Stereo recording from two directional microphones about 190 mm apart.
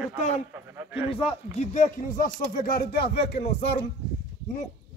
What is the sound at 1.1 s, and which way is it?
Speech, 35° left (ahead or behind).